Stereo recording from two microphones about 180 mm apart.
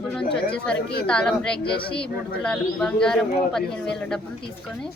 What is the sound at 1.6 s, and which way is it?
Speech, 30° left (ahead or behind).